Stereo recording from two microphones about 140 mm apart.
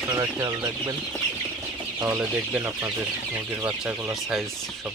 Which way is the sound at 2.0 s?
15° right (ahead or behind).